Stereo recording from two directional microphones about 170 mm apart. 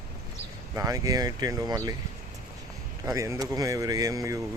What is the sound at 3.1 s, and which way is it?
Speech, 15° right (ahead or behind).